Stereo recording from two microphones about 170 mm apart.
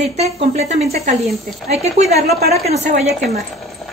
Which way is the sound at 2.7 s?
40° right (ahead or behind).